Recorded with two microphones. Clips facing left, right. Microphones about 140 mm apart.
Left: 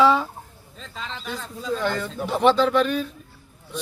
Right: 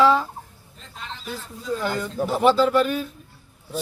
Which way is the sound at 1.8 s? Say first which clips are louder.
Right 3 dB; 5° right (ahead or behind).